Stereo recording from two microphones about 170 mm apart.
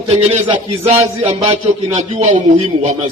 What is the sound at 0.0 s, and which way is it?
A man's voice, 30° right (ahead or behind).